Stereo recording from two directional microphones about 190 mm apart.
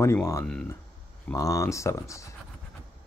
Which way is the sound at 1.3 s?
15° left (ahead or behind).